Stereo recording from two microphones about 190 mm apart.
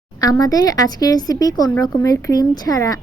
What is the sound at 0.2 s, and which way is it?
Speech, 20° left (ahead or behind).